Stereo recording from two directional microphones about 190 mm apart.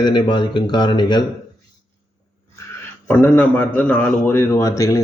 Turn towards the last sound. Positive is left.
turn(degrees=15)  # may be behind; listen again after turning